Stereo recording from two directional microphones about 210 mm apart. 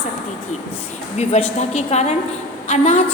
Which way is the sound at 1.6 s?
30° left (ahead or behind).